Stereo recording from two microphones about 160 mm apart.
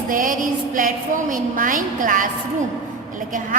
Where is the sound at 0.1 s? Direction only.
55° right (ahead or behind).